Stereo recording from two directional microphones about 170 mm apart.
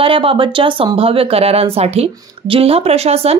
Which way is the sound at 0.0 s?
30° right (ahead or behind).